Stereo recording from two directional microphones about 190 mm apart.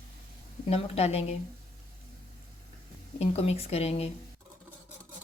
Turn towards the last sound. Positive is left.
turn(degrees=35)  # may be behind; listen again after turning